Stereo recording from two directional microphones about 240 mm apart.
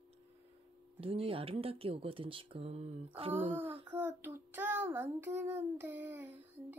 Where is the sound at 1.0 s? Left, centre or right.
Right.